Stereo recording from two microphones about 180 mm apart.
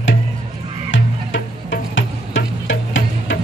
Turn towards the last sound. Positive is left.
turn(degrees=90)